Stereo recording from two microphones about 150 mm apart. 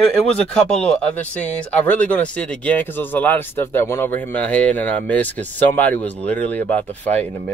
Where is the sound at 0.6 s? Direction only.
5° left (ahead or behind).